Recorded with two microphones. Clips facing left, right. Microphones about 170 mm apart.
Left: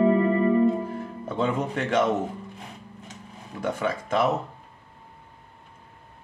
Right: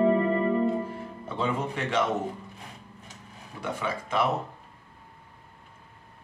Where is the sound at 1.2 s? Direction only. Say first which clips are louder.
Left 3 dB; 50° left (ahead or behind).